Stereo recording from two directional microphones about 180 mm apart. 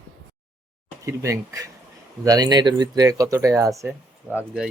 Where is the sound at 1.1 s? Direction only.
15° right (ahead or behind).